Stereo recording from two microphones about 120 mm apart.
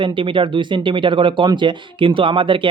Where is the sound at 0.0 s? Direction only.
45° right (ahead or behind).